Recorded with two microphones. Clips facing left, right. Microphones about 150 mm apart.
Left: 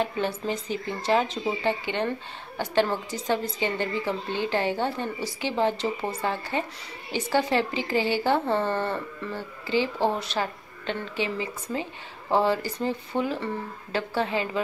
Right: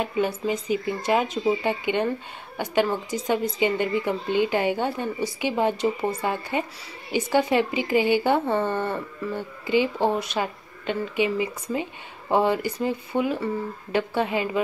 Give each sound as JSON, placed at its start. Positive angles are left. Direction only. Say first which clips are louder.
{"t": 0.0, "sound": "speech", "louder": "right 2 dB", "side_deg": -10}